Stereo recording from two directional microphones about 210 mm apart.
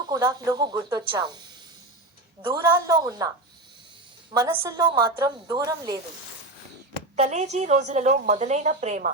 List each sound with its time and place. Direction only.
0.1 s speech: 20° right (ahead or behind)
2.4 s a woman's voice: 10° right (ahead or behind)
4.4 s a woman's voice: 15° right (ahead or behind)
7.2 s a woman's voice: 35° right (ahead or behind)